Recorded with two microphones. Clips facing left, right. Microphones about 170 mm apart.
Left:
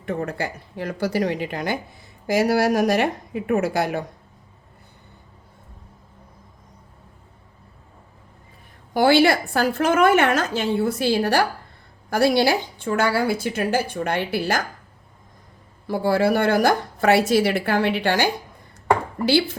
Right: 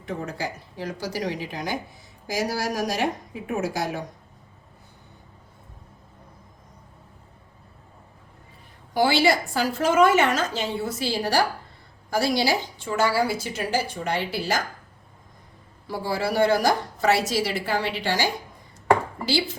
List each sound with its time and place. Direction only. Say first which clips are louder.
0.0 s a woman's voice: left 4 dB; 60° left (ahead or behind)
8.9 s a woman's voice: left 4 dB; 55° left (ahead or behind)
15.9 s a woman's voice: left 7 dB; 55° left (ahead or behind)